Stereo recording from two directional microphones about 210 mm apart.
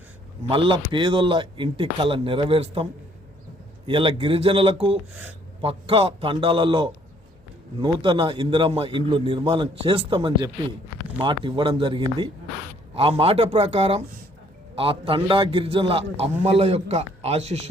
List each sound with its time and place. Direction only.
0.4 s a man's voice: 25° right (ahead or behind)
3.8 s a man's voice: 25° right (ahead or behind)